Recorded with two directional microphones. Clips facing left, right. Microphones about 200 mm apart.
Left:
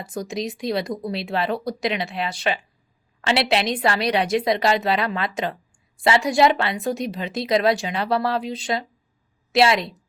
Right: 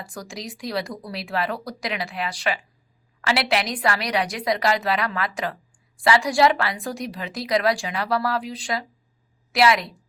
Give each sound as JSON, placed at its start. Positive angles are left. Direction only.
{"t": 0.0, "sound": "a woman's voice", "side_deg": 20}